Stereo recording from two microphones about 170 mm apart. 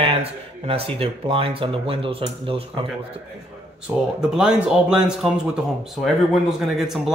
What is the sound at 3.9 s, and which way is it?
Speech, 15° right (ahead or behind).